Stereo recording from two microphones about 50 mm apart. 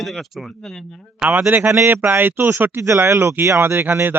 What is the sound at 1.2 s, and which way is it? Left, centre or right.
Speech, right.